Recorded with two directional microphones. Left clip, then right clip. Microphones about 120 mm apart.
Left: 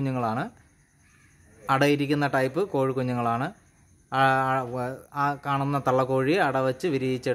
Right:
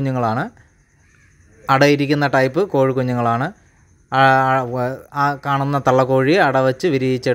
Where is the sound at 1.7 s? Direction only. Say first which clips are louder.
Right 8 dB; 40° right (ahead or behind).